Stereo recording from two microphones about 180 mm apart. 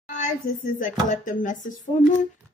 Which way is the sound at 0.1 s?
45° left (ahead or behind).